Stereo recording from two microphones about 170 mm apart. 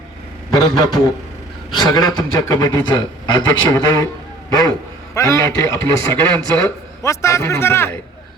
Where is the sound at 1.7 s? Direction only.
25° left (ahead or behind).